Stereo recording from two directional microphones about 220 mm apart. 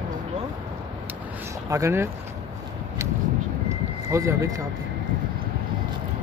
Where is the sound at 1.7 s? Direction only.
15° right (ahead or behind).